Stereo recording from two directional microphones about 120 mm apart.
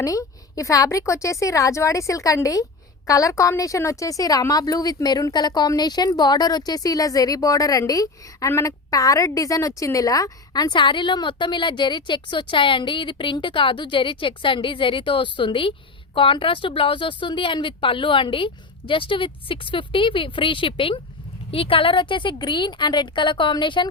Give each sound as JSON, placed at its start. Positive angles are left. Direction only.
{"t": 0.0, "sound": "a woman's voice", "side_deg": 30}